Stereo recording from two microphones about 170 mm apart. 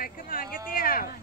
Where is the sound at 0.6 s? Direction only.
60° left (ahead or behind).